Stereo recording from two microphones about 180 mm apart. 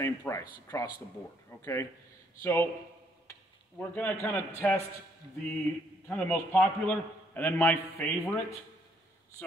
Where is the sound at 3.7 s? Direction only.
10° left (ahead or behind).